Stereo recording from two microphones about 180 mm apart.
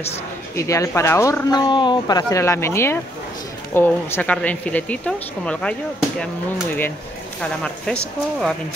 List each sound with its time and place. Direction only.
0.6 s speech: 15° left (ahead or behind)
7.4 s speech: 5° left (ahead or behind)